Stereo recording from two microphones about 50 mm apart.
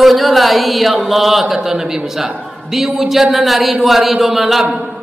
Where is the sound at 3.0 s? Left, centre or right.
Centre.